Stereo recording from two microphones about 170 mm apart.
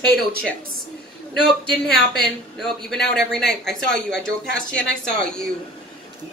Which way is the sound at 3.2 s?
75° left (ahead or behind).